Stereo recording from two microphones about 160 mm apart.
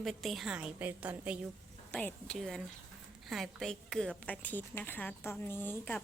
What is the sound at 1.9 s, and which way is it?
A woman's voice, 10° left (ahead or behind).